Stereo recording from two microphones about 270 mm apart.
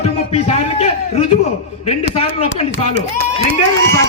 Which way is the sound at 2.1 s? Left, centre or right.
Left.